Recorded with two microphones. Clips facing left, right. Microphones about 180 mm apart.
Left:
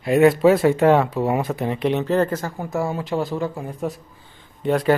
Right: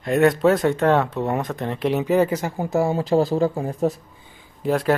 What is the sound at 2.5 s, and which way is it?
Speech, 25° right (ahead or behind).